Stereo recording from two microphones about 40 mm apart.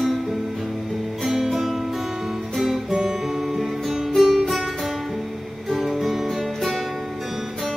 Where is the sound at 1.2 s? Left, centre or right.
Centre.